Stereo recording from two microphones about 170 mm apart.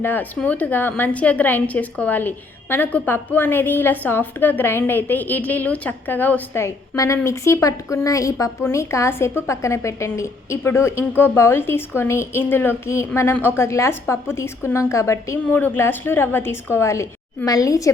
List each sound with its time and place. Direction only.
0.0 s a woman's voice: 10° left (ahead or behind)